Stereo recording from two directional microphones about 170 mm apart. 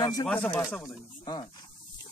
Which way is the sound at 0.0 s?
20° left (ahead or behind).